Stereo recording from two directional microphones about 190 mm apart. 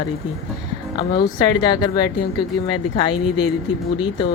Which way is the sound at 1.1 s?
20° left (ahead or behind).